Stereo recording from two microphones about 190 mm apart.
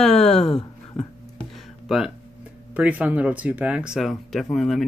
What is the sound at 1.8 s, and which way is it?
Speech, centre (ahead or behind).